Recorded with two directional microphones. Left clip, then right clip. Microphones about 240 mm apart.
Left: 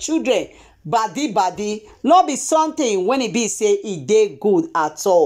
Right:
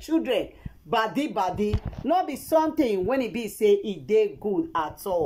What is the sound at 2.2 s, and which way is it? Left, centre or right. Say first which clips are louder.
Speech: left 7 dB; centre.